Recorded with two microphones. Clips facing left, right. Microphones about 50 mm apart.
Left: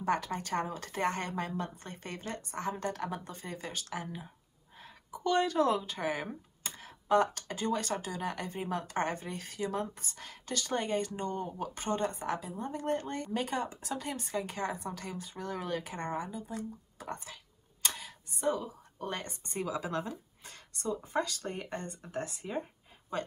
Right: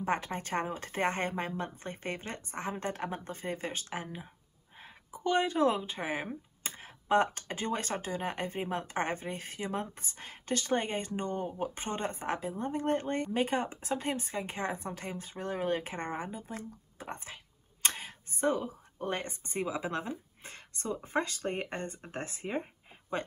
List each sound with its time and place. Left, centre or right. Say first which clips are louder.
0.0 s speech: left 1 dB; right